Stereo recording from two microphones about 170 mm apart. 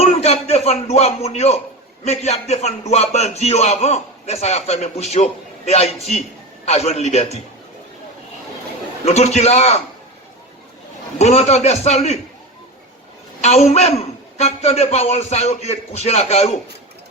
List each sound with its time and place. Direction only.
0.0 s a sound: 40° left (ahead or behind)
2.0 s a man's voice: 40° left (ahead or behind)
9.0 s a man's voice: 40° left (ahead or behind)
11.2 s a man's voice: 40° left (ahead or behind)
13.4 s a man's voice: 40° left (ahead or behind)